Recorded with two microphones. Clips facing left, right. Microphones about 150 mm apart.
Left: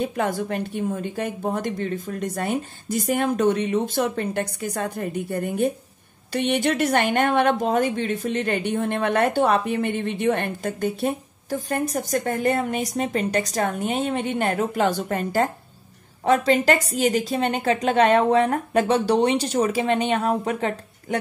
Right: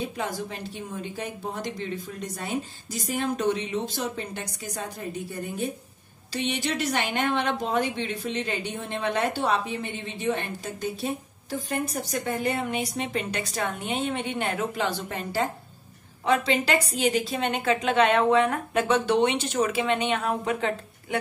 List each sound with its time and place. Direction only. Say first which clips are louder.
0.0 s a woman's voice: left 6 dB; 55° left (ahead or behind)